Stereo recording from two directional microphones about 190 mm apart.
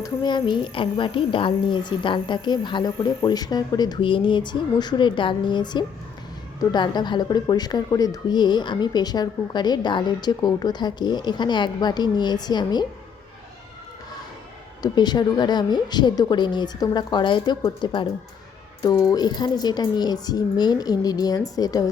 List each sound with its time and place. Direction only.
0.0 s speech: 20° left (ahead or behind)
14.8 s speech: 20° left (ahead or behind)